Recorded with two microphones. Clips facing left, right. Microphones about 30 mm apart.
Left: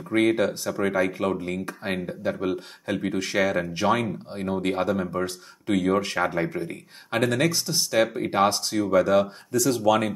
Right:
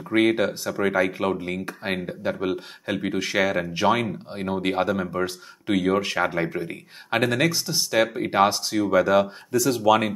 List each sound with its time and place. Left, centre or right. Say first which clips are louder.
0.1 s speech: right 1 dB; centre